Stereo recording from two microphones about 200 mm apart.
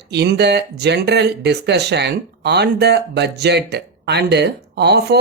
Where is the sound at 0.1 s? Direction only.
55° right (ahead or behind).